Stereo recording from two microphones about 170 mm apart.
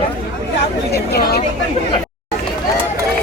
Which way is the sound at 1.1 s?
70° left (ahead or behind).